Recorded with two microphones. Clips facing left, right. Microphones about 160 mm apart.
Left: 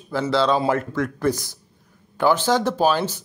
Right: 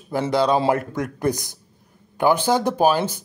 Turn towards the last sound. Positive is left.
turn(degrees=-10)  # may be behind; listen again after turning